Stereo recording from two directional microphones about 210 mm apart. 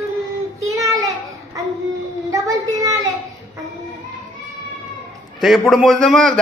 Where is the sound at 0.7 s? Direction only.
15° right (ahead or behind).